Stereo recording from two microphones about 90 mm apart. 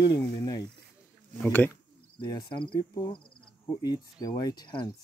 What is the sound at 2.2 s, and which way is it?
Speech, 55° left (ahead or behind).